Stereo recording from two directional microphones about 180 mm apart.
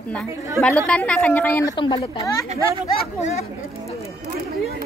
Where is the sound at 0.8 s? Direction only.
5° left (ahead or behind); by 2.4 s 25° left (ahead or behind).